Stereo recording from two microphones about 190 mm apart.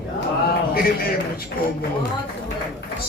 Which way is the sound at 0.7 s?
50° left (ahead or behind).